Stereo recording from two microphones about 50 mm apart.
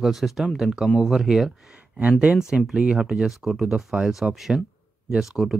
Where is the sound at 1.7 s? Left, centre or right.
Right.